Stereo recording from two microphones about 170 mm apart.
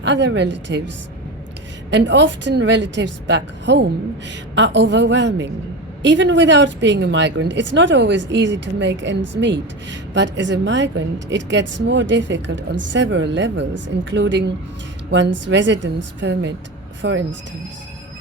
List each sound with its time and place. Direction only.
0.0 s a woman's voice: 90° right
1.9 s a woman's voice: 90° right